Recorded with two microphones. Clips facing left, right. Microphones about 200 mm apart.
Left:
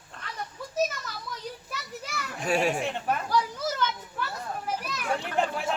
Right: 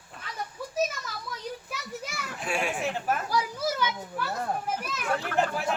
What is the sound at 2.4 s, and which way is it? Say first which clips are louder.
Speech: left 5 dB; 40° left (ahead or behind).